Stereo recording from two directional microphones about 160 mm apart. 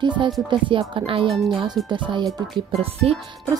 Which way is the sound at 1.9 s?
30° right (ahead or behind).